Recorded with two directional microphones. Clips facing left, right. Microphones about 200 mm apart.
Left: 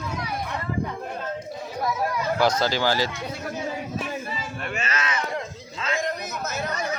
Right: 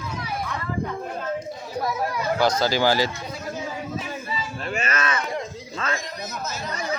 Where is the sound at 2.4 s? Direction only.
5° left (ahead or behind).